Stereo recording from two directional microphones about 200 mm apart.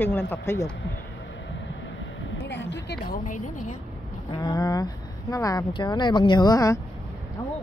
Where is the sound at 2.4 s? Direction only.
60° left (ahead or behind).